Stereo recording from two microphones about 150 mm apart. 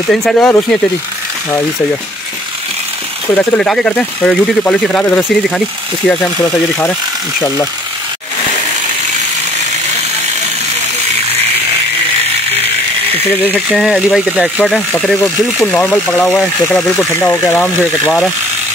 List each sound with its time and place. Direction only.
0.1 s speech: 5° left (ahead or behind)
3.3 s speech: 10° left (ahead or behind)
13.5 s speech: 5° right (ahead or behind)
15.0 s speech: 5° left (ahead or behind)